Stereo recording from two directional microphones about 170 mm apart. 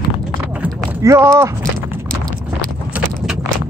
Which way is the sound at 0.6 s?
15° right (ahead or behind).